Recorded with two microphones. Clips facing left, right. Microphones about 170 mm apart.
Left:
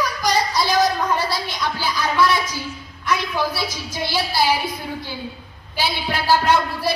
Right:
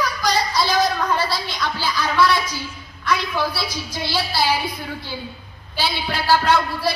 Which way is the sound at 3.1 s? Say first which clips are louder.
Even; 15° left (ahead or behind).